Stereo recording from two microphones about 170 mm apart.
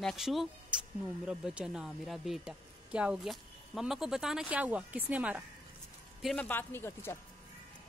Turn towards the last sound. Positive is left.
turn(degrees=15)  # may be behind; listen again after turning